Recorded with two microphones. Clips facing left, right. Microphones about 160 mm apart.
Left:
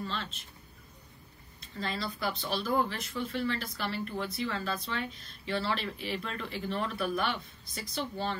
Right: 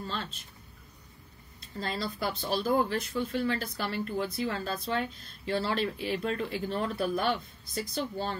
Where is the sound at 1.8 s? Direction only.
40° right (ahead or behind).